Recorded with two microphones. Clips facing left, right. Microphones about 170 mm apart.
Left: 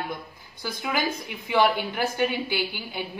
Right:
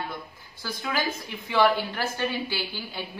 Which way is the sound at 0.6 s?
15° left (ahead or behind).